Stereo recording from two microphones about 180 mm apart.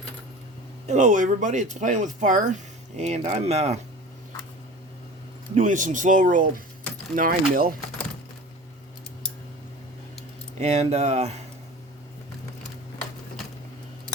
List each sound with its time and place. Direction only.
0.9 s speech: 40° right (ahead or behind)
5.5 s speech: 45° right (ahead or behind)
10.6 s speech: 35° right (ahead or behind)